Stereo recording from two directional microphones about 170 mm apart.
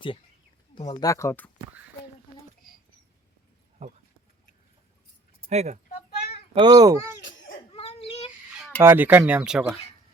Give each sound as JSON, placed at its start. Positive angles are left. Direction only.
{"t": 0.8, "sound": "speech", "side_deg": 25}
{"t": 3.8, "sound": "speech", "side_deg": -40}
{"t": 5.5, "sound": "speech", "side_deg": -40}
{"t": 6.5, "sound": "a child's voice", "side_deg": -25}
{"t": 7.2, "sound": "laughter", "side_deg": 90}
{"t": 7.7, "sound": "a sound", "side_deg": 35}
{"t": 8.8, "sound": "speech", "side_deg": -10}